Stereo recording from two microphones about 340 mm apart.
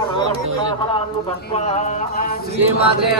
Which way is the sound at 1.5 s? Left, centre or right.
Centre.